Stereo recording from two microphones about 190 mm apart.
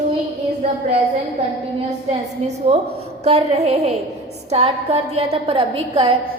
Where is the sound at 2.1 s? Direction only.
35° right (ahead or behind).